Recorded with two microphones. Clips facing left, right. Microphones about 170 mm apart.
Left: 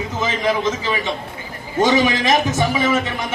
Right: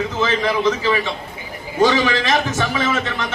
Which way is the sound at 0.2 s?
15° left (ahead or behind).